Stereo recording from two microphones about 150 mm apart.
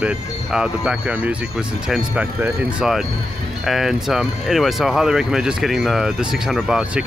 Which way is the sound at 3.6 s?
Centre (ahead or behind).